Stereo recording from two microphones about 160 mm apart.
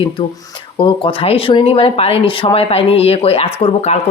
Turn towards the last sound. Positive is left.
turn(degrees=40)  # may be behind; listen again after turning